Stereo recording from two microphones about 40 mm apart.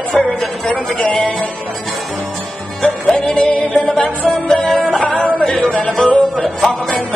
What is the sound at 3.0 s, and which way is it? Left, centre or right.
Music, left.